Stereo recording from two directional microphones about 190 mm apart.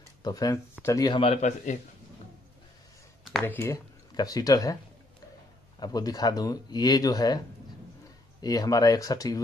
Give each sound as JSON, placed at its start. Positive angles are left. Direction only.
{"t": 0.2, "sound": "speech", "side_deg": 20}
{"t": 3.4, "sound": "speech", "side_deg": 15}
{"t": 5.8, "sound": "speech", "side_deg": 20}